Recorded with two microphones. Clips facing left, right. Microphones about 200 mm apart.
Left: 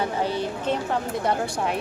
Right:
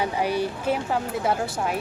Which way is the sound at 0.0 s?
10° right (ahead or behind).